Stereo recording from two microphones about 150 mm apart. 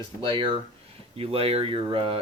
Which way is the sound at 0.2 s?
35° right (ahead or behind).